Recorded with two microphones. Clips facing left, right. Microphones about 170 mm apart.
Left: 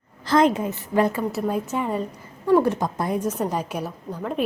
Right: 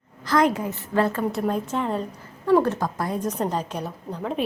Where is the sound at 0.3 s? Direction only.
25° left (ahead or behind).